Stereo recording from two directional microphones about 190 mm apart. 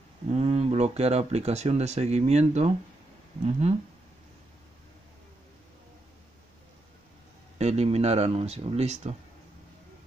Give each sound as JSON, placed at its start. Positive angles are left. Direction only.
{"t": 0.3, "sound": "speech", "side_deg": -35}
{"t": 7.5, "sound": "speech", "side_deg": -35}